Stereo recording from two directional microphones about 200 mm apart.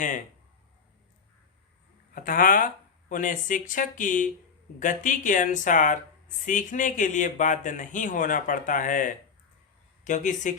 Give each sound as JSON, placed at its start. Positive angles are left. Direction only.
{"t": 2.1, "sound": "speech", "side_deg": 45}